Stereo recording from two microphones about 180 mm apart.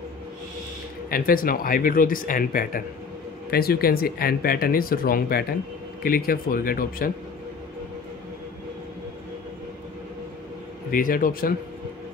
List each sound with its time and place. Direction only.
1.1 s speech: 55° left (ahead or behind)
10.9 s speech: 50° left (ahead or behind)